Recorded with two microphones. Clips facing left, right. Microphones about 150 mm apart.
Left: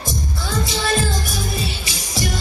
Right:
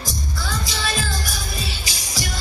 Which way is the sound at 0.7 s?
25° left (ahead or behind).